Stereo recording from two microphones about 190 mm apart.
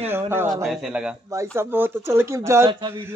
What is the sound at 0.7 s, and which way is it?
Speech, 5° right (ahead or behind).